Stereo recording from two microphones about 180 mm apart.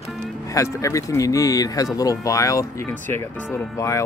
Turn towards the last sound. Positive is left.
turn(degrees=20)  # may be behind; listen again after turning